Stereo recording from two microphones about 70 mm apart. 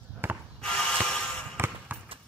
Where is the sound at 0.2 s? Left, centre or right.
Right.